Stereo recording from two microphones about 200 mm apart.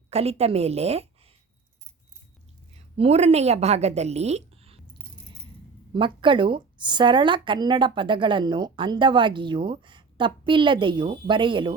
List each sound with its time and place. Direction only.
0.1 s a woman's voice: 30° right (ahead or behind)
3.0 s a woman's voice: 30° right (ahead or behind)
5.9 s speech: 25° right (ahead or behind)